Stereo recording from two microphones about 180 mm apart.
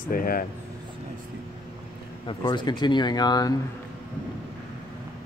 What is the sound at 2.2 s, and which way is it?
Speech, 25° left (ahead or behind).